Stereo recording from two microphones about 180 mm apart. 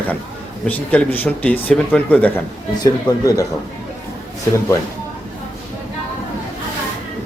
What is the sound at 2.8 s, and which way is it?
Speech, 20° left (ahead or behind).